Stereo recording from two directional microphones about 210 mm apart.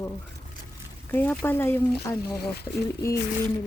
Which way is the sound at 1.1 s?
10° left (ahead or behind).